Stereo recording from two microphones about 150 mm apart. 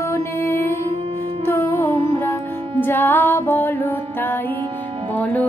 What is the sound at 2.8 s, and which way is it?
Music, 15° left (ahead or behind).